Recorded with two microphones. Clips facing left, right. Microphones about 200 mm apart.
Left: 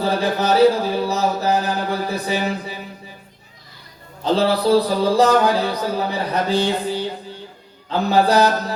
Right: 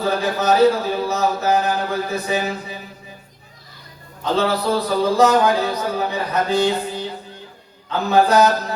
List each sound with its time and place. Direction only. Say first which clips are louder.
0.0 s speech: left 1 dB; 35° left (ahead or behind)
1.0 s a sound: even; 35° left (ahead or behind)
4.2 s a man's voice: left 2 dB; 35° left (ahead or behind)